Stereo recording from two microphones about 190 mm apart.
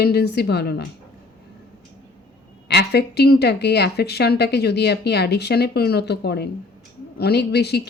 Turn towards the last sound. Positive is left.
turn(degrees=60)  # may be behind; listen again after turning